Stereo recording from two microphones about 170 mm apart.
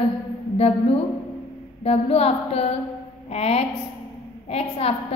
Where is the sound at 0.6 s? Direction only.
35° left (ahead or behind).